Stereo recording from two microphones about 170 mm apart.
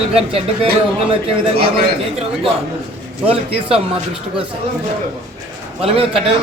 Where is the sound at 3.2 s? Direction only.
35° right (ahead or behind).